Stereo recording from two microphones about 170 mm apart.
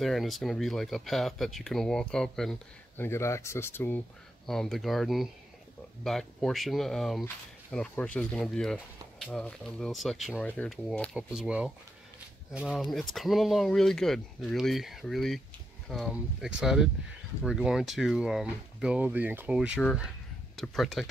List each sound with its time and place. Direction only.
0.0 s speech: centre (ahead or behind)
3.0 s speech: 15° left (ahead or behind)
4.5 s speech: centre (ahead or behind)
11.1 s speech: 5° right (ahead or behind)